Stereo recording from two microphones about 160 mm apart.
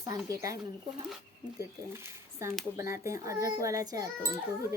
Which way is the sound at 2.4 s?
15° right (ahead or behind).